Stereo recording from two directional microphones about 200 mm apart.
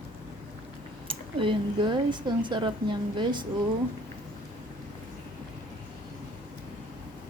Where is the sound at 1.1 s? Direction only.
25° right (ahead or behind).